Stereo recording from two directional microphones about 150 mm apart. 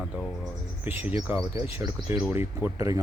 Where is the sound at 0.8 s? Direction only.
10° right (ahead or behind).